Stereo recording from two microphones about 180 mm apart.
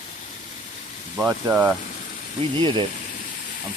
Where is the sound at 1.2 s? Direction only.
10° right (ahead or behind).